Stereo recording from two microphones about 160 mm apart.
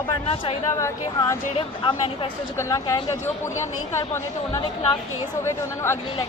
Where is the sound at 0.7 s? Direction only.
20° left (ahead or behind).